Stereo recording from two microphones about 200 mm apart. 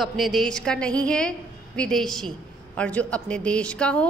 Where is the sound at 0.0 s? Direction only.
Centre (ahead or behind).